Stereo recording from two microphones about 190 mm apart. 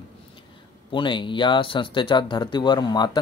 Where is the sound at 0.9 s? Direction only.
25° left (ahead or behind).